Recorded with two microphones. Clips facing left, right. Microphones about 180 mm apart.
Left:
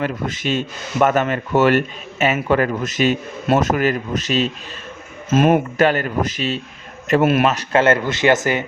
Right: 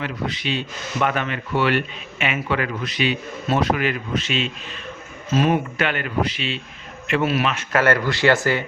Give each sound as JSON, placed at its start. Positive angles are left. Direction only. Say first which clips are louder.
{"t": 0.0, "sound": "speech", "louder": "left 4 dB", "side_deg": 45}
{"t": 7.5, "sound": "speech", "louder": "left 3 dB", "side_deg": 25}